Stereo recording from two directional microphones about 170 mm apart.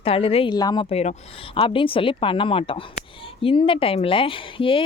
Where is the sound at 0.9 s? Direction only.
40° left (ahead or behind).